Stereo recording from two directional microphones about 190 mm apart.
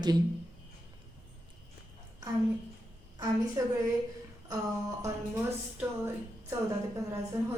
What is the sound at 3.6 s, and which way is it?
Speech, 15° right (ahead or behind).